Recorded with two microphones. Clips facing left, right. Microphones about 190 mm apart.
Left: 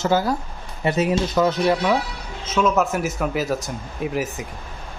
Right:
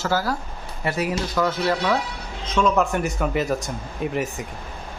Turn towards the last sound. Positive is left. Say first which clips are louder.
# left 1 dB
turn(degrees=0)  # may be behind; listen again after turning